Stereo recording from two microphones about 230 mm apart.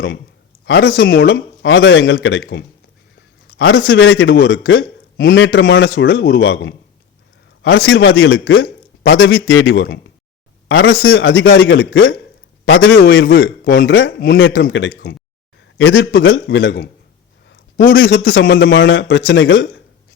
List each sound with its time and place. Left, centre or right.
0.6 s a man's voice: left
13.0 s a man's voice: left
17.5 s a sound: left
17.9 s speech: left